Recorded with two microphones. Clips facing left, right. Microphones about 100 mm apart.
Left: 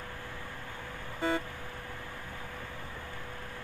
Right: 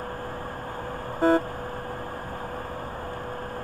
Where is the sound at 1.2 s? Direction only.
45° right (ahead or behind).